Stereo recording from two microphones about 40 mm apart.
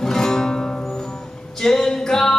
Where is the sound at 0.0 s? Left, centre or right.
Centre.